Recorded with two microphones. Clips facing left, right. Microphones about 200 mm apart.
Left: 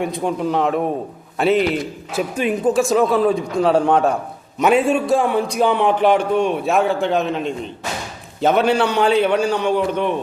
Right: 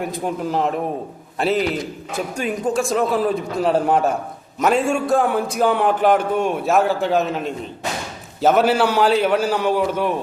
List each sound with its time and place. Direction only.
0.0 s a man's voice: centre (ahead or behind)
2.7 s a man's voice: centre (ahead or behind)